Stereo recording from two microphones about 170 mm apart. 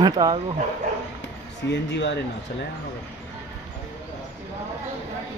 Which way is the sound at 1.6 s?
90° left.